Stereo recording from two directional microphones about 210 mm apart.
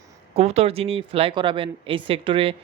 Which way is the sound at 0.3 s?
30° right (ahead or behind).